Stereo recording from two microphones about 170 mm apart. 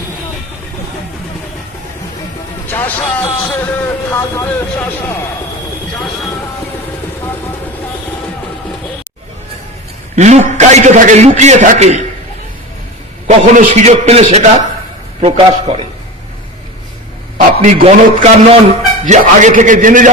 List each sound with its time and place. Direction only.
2.6 s a man's voice: 10° left (ahead or behind)
10.2 s a man's voice: 45° right (ahead or behind)
13.2 s a man's voice: 45° right (ahead or behind)
17.6 s a man's voice: 40° right (ahead or behind)